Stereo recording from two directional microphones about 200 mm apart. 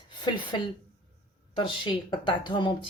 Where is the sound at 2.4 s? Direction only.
25° left (ahead or behind).